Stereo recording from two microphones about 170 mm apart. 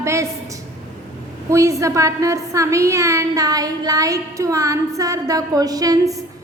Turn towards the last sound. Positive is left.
turn(degrees=-20)  # may be behind; listen again after turning